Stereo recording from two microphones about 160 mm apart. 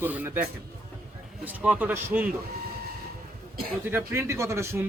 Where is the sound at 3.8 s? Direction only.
15° right (ahead or behind).